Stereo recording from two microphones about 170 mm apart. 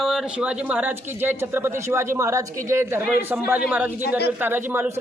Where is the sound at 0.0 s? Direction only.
5° right (ahead or behind).